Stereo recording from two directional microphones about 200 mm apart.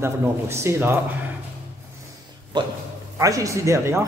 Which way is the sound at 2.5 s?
20° right (ahead or behind).